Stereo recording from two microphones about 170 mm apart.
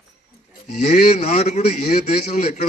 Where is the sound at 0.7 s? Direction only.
45° left (ahead or behind).